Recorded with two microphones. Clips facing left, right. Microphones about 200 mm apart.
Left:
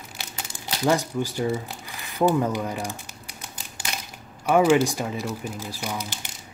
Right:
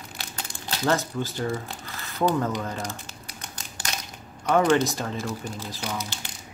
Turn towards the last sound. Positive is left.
turn(degrees=15)  # may be behind; listen again after turning